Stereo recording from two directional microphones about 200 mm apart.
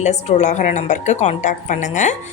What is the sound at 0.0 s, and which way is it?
A woman's voice, 35° left (ahead or behind).